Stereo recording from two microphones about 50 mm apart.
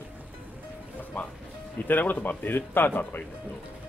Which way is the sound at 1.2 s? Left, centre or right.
Left.